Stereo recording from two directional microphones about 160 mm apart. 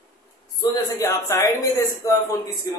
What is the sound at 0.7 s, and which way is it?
A man's voice, 25° left (ahead or behind).